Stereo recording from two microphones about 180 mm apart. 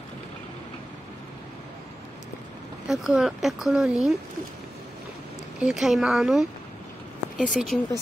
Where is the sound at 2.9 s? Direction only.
5° right (ahead or behind).